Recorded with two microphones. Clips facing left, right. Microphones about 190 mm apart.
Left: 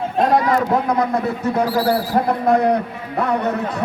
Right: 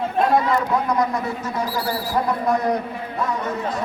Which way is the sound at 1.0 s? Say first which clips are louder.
Left 3 dB; 60° left (ahead or behind).